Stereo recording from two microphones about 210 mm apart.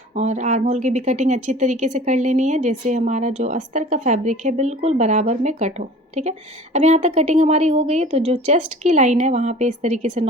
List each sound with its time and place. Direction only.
0.1 s a woman's voice: 35° right (ahead or behind)